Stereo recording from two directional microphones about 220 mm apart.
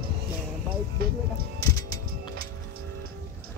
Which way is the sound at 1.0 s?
45° right (ahead or behind).